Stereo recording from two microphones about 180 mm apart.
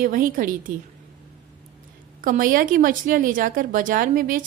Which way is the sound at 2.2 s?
50° right (ahead or behind).